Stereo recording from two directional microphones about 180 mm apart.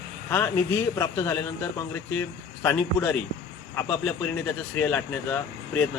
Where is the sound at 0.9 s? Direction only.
15° left (ahead or behind).